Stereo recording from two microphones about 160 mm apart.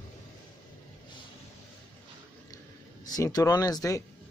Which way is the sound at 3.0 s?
25° left (ahead or behind).